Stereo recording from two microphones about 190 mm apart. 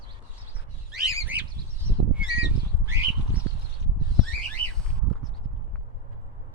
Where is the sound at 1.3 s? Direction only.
10° right (ahead or behind).